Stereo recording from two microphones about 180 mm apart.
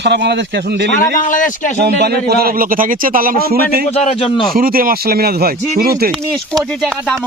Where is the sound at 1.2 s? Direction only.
45° left (ahead or behind).